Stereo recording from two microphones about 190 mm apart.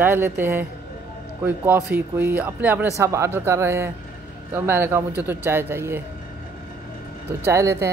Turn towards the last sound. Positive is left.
turn(degrees=-15)  # may be behind; listen again after turning